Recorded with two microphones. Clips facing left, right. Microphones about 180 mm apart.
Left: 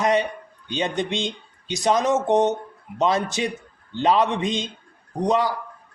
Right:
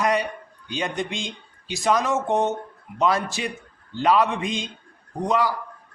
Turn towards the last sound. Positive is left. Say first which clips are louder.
# left 2 dB
turn(degrees=20)  # may be behind; listen again after turning